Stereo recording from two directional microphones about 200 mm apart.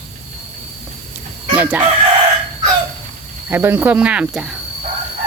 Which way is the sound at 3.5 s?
10° right (ahead or behind).